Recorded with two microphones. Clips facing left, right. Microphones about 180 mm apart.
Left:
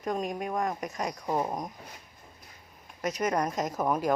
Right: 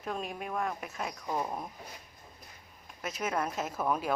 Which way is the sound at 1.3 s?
25° left (ahead or behind).